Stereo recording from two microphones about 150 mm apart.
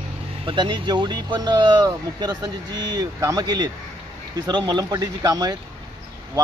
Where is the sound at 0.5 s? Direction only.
30° right (ahead or behind).